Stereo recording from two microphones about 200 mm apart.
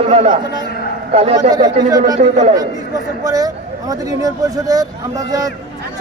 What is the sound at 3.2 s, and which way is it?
Speech, 20° right (ahead or behind).